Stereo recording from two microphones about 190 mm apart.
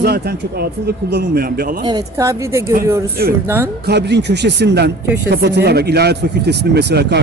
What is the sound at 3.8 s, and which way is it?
Speech, 60° right (ahead or behind).